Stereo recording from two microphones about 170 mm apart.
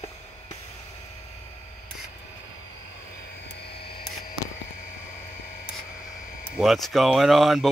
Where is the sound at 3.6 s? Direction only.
70° left (ahead or behind).